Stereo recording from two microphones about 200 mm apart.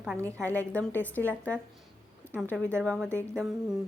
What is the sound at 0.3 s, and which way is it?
A woman's voice, 10° left (ahead or behind).